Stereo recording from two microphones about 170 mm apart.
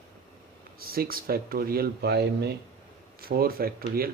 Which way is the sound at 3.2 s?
60° right (ahead or behind).